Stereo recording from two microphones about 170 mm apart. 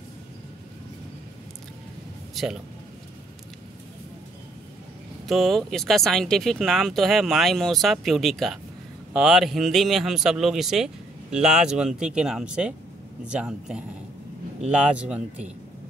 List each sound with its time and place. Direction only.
2.4 s a man's voice: centre (ahead or behind)
5.3 s speech: centre (ahead or behind)